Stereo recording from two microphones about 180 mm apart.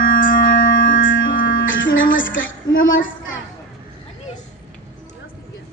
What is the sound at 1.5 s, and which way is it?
Music, 90° left.